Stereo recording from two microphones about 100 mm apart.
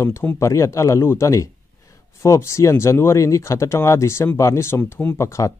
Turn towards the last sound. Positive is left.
turn(degrees=30)  # may be behind; listen again after turning